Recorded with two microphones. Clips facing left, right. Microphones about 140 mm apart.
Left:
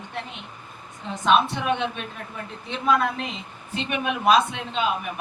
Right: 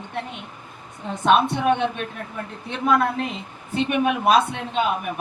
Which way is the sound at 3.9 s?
55° right (ahead or behind).